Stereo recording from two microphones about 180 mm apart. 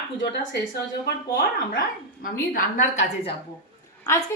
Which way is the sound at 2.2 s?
50° left (ahead or behind).